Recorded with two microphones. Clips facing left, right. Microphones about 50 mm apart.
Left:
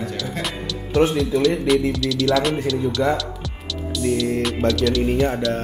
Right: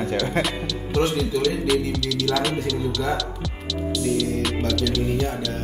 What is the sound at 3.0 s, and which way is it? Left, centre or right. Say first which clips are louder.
Speech: left 6 dB; left.